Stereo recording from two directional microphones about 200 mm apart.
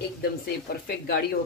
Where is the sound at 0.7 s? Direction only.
50° left (ahead or behind).